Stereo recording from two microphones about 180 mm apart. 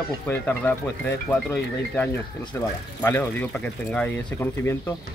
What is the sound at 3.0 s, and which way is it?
A man's voice, 10° left (ahead or behind).